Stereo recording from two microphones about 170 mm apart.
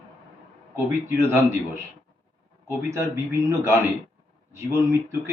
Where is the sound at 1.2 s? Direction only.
15° right (ahead or behind).